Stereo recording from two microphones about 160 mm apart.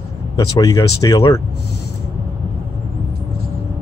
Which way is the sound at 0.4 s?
20° left (ahead or behind).